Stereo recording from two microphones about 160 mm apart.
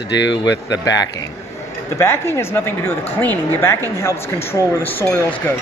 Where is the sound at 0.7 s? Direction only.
25° left (ahead or behind).